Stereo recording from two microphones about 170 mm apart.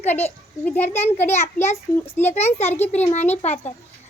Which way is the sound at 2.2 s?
40° left (ahead or behind).